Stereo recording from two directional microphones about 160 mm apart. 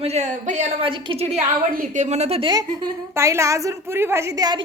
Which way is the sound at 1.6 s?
55° right (ahead or behind).